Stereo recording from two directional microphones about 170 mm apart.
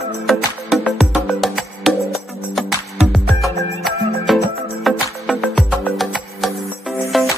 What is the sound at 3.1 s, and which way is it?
Music, centre (ahead or behind).